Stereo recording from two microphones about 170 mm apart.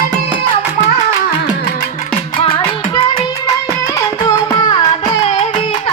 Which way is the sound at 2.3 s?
35° left (ahead or behind).